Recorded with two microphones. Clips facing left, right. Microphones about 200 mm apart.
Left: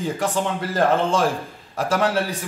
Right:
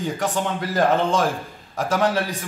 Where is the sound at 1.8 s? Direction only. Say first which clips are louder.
Even; 5° left (ahead or behind).